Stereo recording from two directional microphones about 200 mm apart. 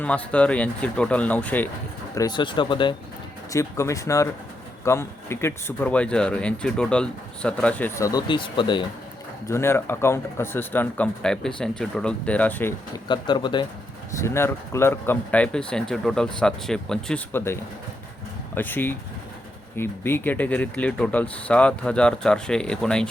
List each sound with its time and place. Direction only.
0.0 s speech: 5° left (ahead or behind)
2.1 s speech: 20° left (ahead or behind)
9.5 s speech: 10° left (ahead or behind)
13.1 s speech: 25° left (ahead or behind)
14.2 s speech: 15° left (ahead or behind)